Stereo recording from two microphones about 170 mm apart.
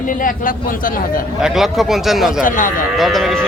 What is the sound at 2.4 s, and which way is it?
Speech, 50° left (ahead or behind).